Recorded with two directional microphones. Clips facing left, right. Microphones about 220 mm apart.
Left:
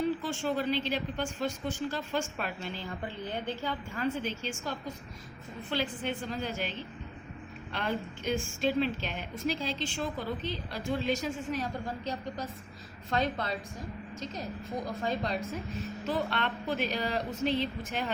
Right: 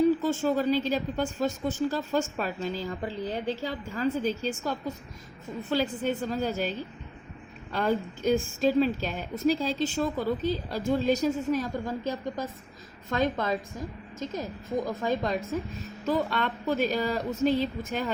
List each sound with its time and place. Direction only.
0.2 s a woman's voice: 40° right (ahead or behind)
14.8 s speech: 45° right (ahead or behind)